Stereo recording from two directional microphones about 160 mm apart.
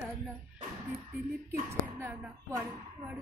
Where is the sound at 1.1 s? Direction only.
15° right (ahead or behind).